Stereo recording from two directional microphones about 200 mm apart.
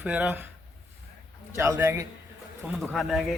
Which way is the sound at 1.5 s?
15° right (ahead or behind).